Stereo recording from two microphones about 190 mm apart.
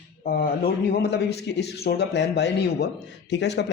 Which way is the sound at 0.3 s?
55° left (ahead or behind).